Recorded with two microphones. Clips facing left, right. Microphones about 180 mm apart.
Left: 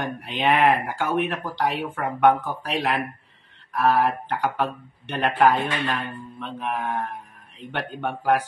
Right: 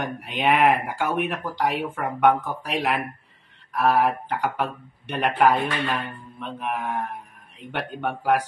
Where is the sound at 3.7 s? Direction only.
10° right (ahead or behind).